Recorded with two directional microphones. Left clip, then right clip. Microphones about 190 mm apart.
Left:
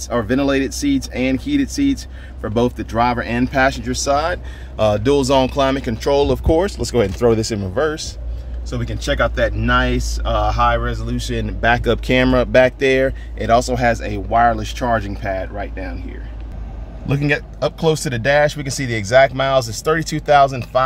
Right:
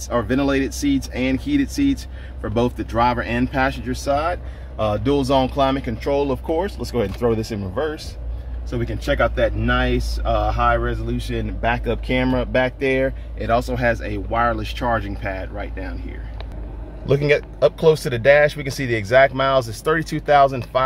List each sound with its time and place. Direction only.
0.1 s speech: 30° left (ahead or behind); by 16.0 s 15° left (ahead or behind)
17.1 s a man's voice: 15° right (ahead or behind)
17.8 s speech: centre (ahead or behind)